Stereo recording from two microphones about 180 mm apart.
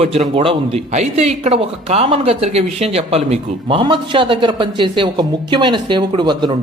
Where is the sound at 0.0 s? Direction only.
35° right (ahead or behind).